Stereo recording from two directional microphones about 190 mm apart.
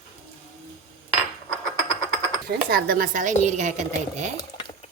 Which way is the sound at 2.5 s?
50° right (ahead or behind).